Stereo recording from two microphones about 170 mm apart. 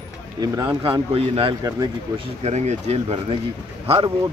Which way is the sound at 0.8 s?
30° right (ahead or behind).